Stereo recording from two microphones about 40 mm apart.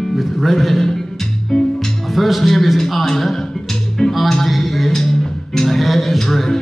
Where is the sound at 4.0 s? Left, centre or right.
Centre.